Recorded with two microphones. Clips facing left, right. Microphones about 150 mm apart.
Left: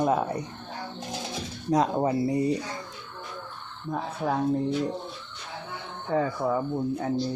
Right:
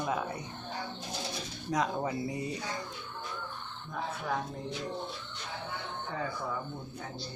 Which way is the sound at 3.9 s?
45° left (ahead or behind).